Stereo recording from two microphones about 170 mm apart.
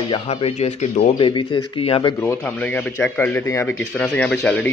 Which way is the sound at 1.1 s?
30° left (ahead or behind).